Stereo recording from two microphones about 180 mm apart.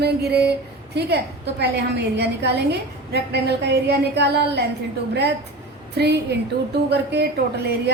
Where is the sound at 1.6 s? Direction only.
70° right (ahead or behind).